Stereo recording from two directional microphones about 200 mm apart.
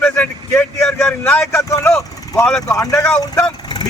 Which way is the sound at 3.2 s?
20° left (ahead or behind).